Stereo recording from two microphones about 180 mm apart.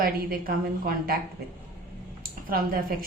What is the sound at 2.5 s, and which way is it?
Speech, 55° right (ahead or behind).